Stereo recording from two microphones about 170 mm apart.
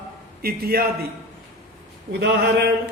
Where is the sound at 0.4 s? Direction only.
65° right (ahead or behind).